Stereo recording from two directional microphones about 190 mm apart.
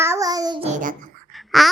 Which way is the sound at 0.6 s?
40° right (ahead or behind).